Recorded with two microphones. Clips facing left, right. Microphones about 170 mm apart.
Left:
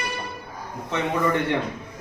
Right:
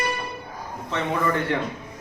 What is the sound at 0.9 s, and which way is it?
Speech, 15° left (ahead or behind).